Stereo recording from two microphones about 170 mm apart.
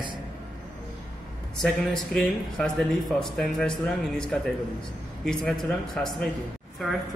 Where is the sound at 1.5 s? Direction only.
Centre (ahead or behind).